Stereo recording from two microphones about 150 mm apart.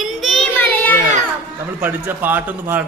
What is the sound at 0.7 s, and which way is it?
Speech, 10° left (ahead or behind).